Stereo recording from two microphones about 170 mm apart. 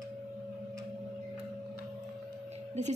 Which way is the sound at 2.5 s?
40° right (ahead or behind).